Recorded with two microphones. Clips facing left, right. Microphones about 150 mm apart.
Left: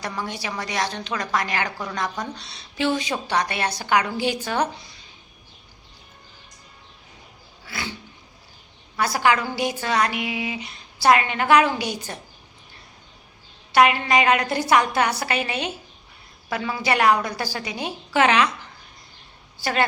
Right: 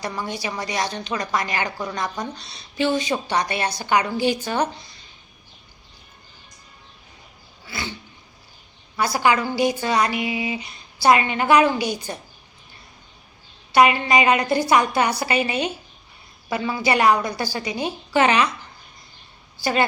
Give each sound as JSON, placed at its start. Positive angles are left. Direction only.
{"t": 0.0, "sound": "a woman's voice", "side_deg": 0}
{"t": 9.0, "sound": "a woman's voice", "side_deg": 0}
{"t": 13.7, "sound": "a woman's voice", "side_deg": 0}